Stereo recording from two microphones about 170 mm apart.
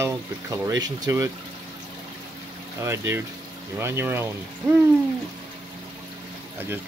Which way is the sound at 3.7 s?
15° right (ahead or behind).